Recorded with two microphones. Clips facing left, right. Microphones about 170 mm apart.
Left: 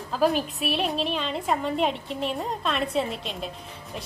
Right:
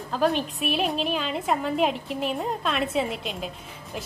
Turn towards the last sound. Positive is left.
turn(degrees=0)  # may be behind; listen again after turning